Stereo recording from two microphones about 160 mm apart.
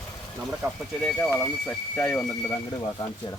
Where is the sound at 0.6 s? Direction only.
15° right (ahead or behind).